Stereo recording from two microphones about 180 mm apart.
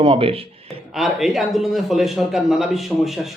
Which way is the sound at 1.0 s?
Centre (ahead or behind).